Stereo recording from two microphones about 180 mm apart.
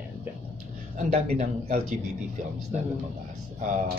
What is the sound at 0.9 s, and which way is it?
Speech, 40° right (ahead or behind).